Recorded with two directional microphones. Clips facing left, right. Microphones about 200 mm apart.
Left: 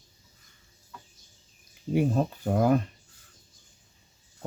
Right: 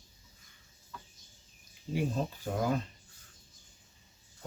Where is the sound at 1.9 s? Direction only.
60° left (ahead or behind).